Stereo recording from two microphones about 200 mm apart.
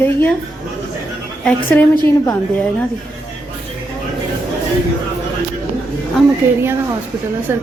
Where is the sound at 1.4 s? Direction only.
10° left (ahead or behind).